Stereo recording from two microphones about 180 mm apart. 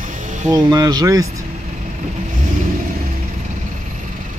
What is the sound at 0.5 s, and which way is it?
Speech, 20° right (ahead or behind).